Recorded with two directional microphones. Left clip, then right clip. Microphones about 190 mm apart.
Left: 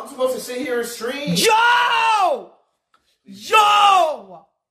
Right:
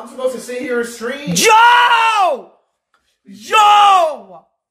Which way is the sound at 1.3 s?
30° right (ahead or behind).